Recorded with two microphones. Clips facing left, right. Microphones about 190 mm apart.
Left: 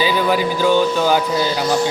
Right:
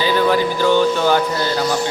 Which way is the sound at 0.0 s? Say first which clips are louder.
Right 1 dB; 10° left (ahead or behind).